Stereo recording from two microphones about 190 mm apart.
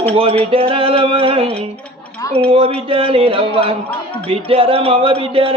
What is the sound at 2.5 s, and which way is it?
Speech, 30° right (ahead or behind).